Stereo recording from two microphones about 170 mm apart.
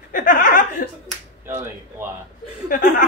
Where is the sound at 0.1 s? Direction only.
50° left (ahead or behind).